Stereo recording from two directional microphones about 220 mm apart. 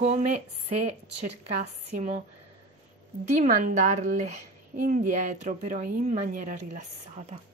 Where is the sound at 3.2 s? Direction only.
35° right (ahead or behind).